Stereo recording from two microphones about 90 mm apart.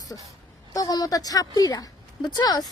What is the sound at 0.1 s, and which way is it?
Speech, 20° left (ahead or behind).